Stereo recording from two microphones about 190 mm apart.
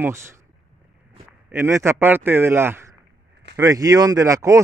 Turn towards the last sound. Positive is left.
turn(degrees=-15)  # may be behind; listen again after turning